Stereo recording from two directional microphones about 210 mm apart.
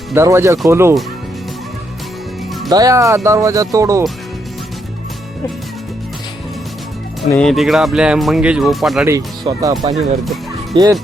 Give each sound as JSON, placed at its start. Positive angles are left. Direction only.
{"t": 0.1, "sound": "speech", "side_deg": -15}
{"t": 2.6, "sound": "speech", "side_deg": -15}
{"t": 7.3, "sound": "speech", "side_deg": 5}
{"t": 9.0, "sound": "speech", "side_deg": -15}
{"t": 10.8, "sound": "speech", "side_deg": -20}